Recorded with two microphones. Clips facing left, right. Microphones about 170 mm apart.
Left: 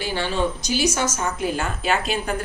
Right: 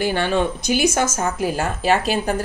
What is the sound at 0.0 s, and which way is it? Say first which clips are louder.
A woman's voice: right 4 dB; 55° right (ahead or behind).